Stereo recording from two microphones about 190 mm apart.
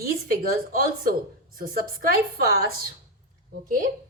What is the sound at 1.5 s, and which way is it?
Speech, 50° right (ahead or behind).